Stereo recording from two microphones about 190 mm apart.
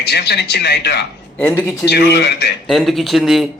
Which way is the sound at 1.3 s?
10° left (ahead or behind).